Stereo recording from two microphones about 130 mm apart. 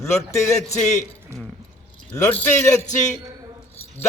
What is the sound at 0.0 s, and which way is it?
Speech, 20° left (ahead or behind).